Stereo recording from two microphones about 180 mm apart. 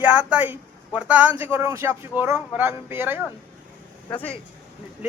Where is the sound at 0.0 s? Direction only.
5° right (ahead or behind).